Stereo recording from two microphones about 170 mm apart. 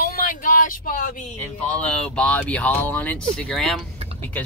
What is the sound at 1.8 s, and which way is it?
Speech, 5° left (ahead or behind).